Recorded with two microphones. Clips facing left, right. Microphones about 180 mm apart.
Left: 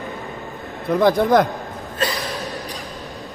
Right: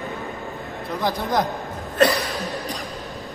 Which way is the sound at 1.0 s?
60° left (ahead or behind).